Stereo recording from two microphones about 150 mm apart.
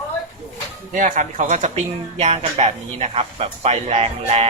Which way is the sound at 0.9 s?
60° right (ahead or behind).